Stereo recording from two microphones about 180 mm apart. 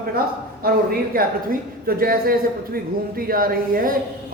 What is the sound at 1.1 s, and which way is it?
A man's voice, 55° right (ahead or behind).